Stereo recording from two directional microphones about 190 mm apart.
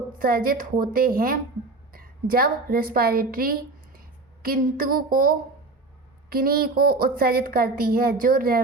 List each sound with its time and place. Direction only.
0.1 s a woman's voice: 50° right (ahead or behind)